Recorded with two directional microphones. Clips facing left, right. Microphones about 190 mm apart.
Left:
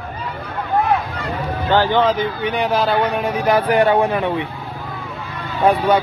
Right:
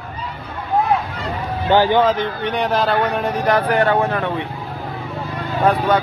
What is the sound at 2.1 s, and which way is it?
Speech, centre (ahead or behind).